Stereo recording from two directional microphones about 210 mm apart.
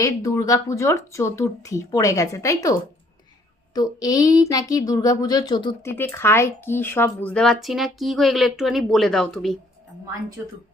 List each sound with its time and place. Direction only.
0.0 s speech: 15° left (ahead or behind)
3.8 s speech: 15° left (ahead or behind); by 9.6 s centre (ahead or behind)